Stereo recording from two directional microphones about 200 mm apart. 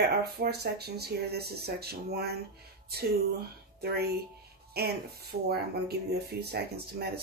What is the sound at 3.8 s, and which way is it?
Speech, 50° right (ahead or behind).